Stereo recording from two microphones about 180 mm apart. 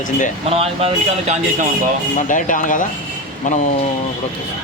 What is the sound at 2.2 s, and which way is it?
Speech, 45° left (ahead or behind).